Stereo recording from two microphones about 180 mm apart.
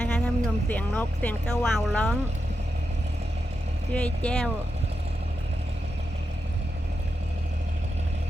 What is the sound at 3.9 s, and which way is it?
Speech, 5° left (ahead or behind).